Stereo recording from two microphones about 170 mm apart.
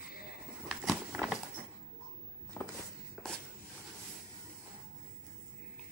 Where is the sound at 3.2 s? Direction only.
Centre (ahead or behind).